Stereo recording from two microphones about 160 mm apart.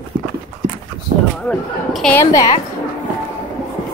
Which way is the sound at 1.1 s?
55° right (ahead or behind).